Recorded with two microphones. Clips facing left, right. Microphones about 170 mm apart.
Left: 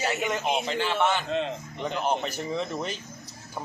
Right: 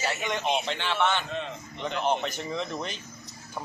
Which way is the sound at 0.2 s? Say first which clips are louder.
Left 1 dB; 5° left (ahead or behind).